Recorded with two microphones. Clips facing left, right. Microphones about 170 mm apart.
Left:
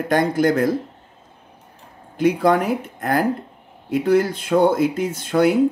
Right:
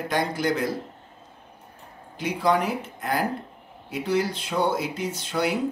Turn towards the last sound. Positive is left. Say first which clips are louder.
# left 8 dB
turn(degrees=50)  # may be behind; listen again after turning